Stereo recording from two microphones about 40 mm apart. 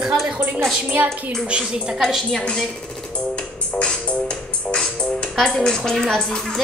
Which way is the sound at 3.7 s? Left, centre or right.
Centre.